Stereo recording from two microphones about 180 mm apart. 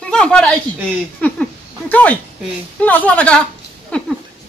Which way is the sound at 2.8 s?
10° left (ahead or behind).